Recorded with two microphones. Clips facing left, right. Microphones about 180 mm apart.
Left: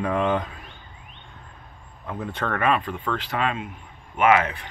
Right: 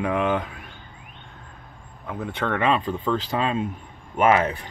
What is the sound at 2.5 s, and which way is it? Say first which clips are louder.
Speech: right 1 dB; 25° right (ahead or behind).